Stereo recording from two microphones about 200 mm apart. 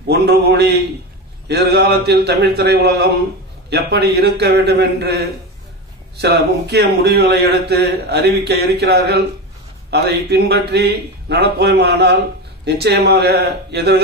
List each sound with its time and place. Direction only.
0.1 s a man's voice: 55° right (ahead or behind)